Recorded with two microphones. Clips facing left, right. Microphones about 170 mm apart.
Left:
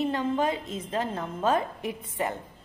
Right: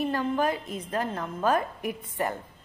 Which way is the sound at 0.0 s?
25° left (ahead or behind).